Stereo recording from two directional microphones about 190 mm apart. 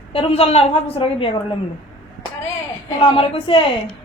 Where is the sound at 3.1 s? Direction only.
30° left (ahead or behind).